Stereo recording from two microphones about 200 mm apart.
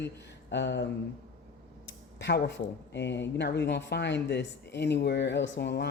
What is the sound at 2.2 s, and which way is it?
Speech, 60° left (ahead or behind).